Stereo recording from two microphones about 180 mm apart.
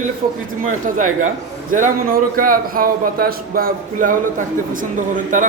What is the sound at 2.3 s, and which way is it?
A man's voice, 50° right (ahead or behind).